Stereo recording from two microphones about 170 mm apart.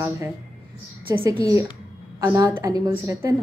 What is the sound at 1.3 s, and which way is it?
A woman's voice, 20° right (ahead or behind).